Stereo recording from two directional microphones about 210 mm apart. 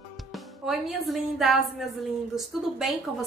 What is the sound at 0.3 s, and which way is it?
A woman's voice, centre (ahead or behind).